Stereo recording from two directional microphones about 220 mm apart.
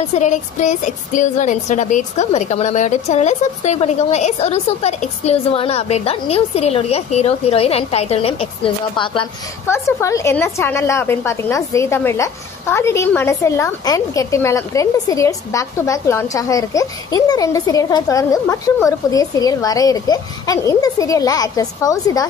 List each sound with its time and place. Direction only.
0.1 s a woman's voice: 35° left (ahead or behind); by 22.3 s 15° left (ahead or behind)